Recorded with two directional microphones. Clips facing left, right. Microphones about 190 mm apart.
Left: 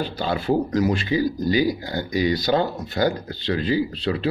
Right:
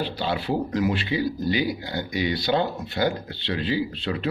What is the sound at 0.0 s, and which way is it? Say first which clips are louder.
A man's voice: left 2 dB; 45° left (ahead or behind).